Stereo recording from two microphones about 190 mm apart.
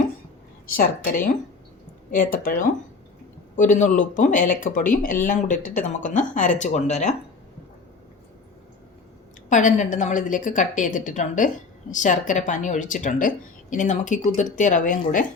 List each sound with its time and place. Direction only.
0.7 s a woman's voice: 50° left (ahead or behind)
9.5 s a woman's voice: 40° left (ahead or behind)